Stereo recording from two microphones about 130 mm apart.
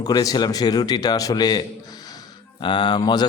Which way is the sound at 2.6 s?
35° left (ahead or behind).